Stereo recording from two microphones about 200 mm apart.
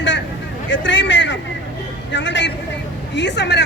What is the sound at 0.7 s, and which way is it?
A man's voice, 65° left (ahead or behind).